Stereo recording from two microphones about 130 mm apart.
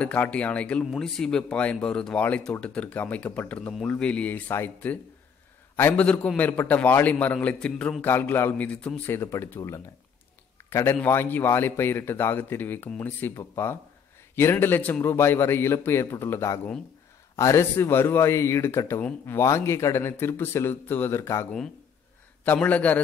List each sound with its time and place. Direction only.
0.0 s a man's voice: 10° left (ahead or behind)